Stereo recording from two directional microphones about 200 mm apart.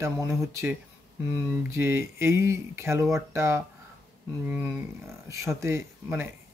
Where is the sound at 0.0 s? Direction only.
15° right (ahead or behind).